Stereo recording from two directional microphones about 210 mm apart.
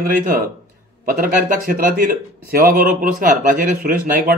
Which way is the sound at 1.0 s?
45° right (ahead or behind).